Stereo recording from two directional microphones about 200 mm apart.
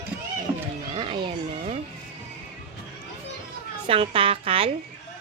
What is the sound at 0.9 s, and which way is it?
Music, 25° right (ahead or behind).